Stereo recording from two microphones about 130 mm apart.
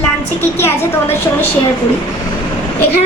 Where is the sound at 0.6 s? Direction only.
20° left (ahead or behind).